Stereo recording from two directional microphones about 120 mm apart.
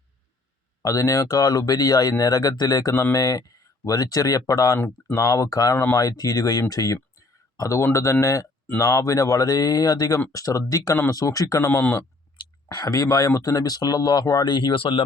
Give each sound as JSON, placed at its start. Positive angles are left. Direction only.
{"t": 0.8, "sound": "speech", "side_deg": 30}
{"t": 5.7, "sound": "speech", "side_deg": 20}
{"t": 6.0, "sound": "speech", "side_deg": 30}
{"t": 12.6, "sound": "speech", "side_deg": 30}